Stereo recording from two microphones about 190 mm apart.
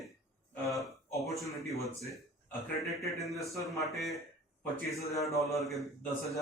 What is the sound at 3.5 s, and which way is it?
Speech, 15° left (ahead or behind).